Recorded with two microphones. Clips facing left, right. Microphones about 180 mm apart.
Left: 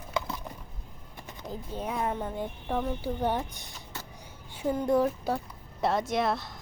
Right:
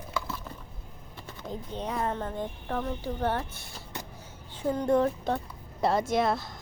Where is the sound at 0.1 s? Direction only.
15° left (ahead or behind).